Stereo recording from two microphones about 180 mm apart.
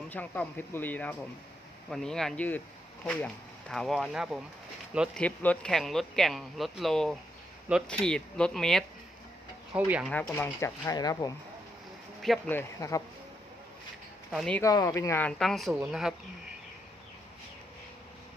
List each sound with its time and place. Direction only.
0.1 s speech: 10° left (ahead or behind)
5.1 s speech: 5° left (ahead or behind)
9.7 s speech: 10° right (ahead or behind)
10.2 s speech: 15° left (ahead or behind)
12.2 s speech: centre (ahead or behind)
12.5 s speech: 15° left (ahead or behind)
14.3 s speech: 5° left (ahead or behind)
14.6 s speech: 20° left (ahead or behind); by 16.1 s 5° right (ahead or behind)